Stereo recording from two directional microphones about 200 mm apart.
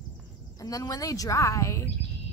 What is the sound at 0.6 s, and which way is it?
A woman's voice, 15° left (ahead or behind).